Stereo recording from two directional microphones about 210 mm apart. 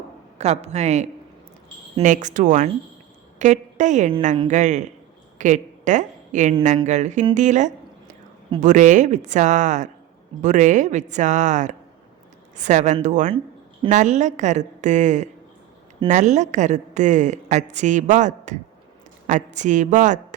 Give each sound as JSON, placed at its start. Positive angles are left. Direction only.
{"t": 0.3, "sound": "a woman's voice", "side_deg": -30}